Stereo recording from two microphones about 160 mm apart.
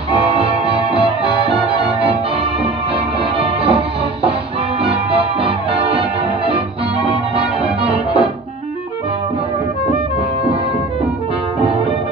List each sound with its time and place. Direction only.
0.1 s music: 35° right (ahead or behind)
7.8 s music: 35° right (ahead or behind)